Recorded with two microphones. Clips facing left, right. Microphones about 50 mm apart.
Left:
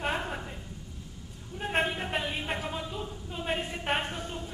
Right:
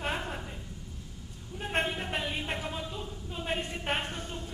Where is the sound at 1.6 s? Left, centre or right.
Centre.